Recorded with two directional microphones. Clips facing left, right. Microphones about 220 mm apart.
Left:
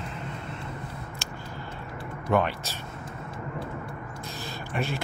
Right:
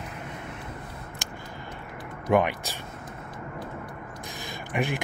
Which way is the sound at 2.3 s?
15° right (ahead or behind).